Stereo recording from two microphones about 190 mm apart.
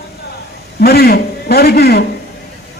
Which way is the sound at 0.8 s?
55° left (ahead or behind).